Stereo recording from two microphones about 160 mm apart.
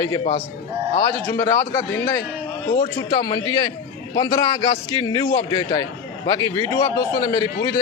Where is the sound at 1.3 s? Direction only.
15° left (ahead or behind).